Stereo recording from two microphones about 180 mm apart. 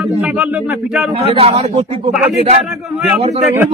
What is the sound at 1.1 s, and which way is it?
Speech, 35° right (ahead or behind).